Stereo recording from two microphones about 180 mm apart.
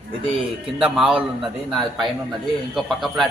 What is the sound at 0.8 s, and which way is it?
Speech, 5° right (ahead or behind).